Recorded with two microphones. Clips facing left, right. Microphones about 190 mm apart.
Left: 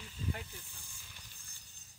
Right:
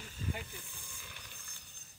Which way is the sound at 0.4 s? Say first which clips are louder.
Right 2 dB; 55° right (ahead or behind).